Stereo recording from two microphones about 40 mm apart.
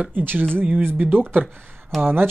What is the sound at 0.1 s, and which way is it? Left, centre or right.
Speech, right.